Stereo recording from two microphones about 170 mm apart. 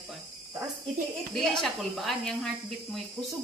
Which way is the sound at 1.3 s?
Centre (ahead or behind).